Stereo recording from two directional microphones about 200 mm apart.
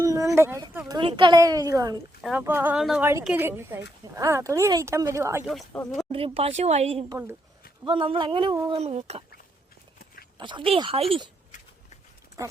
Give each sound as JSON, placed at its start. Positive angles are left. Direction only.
{"t": 0.0, "sound": "a sound", "side_deg": -15}
{"t": 0.9, "sound": "a child's voice", "side_deg": -25}
{"t": 5.5, "sound": "speech", "side_deg": 0}
{"t": 6.1, "sound": "a child's voice", "side_deg": -30}
{"t": 7.1, "sound": "a woman's voice", "side_deg": -10}
{"t": 7.9, "sound": "a child's voice", "side_deg": -25}
{"t": 8.8, "sound": "speech", "side_deg": -35}
{"t": 10.3, "sound": "a child's voice", "side_deg": -25}